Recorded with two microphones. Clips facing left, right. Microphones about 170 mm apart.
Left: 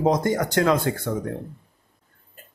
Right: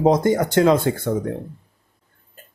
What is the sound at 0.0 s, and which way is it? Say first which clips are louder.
Speech: right 4 dB; 25° right (ahead or behind).